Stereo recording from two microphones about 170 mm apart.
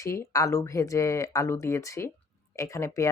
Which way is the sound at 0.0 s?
20° left (ahead or behind).